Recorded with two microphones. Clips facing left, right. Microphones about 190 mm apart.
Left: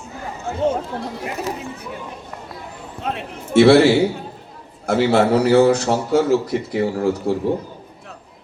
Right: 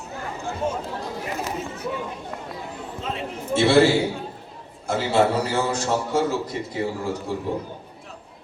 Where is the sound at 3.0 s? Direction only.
65° left (ahead or behind).